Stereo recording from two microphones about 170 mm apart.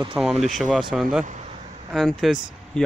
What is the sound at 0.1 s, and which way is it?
Speech, centre (ahead or behind).